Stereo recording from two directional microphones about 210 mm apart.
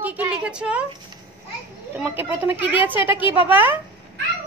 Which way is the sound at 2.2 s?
10° right (ahead or behind).